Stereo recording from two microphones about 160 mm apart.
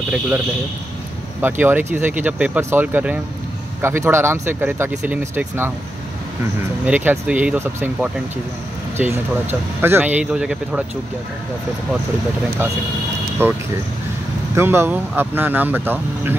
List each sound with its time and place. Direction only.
1.4 s speech: 10° right (ahead or behind)
6.9 s speech: 10° right (ahead or behind)
13.4 s speech: 15° right (ahead or behind)